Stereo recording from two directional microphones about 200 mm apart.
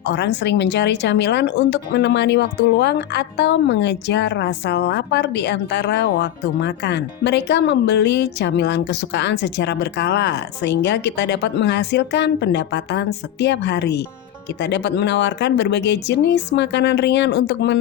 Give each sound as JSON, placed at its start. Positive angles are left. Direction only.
{"t": 0.0, "sound": "a woman's voice", "side_deg": 60}